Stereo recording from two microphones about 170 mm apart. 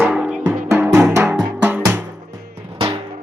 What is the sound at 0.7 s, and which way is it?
Music, 15° right (ahead or behind).